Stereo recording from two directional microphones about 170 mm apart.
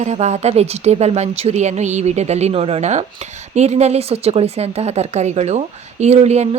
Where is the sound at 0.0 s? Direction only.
40° right (ahead or behind).